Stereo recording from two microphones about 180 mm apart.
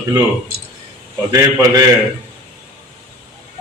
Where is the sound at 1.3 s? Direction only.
20° right (ahead or behind).